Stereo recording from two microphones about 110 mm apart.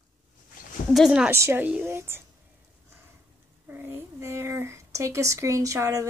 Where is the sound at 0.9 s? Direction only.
5° right (ahead or behind).